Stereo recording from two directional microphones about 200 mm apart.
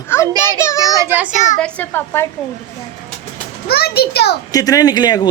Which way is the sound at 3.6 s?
50° left (ahead or behind).